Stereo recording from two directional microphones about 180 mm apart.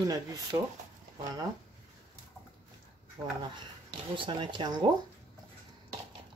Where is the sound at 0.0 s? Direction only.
20° right (ahead or behind).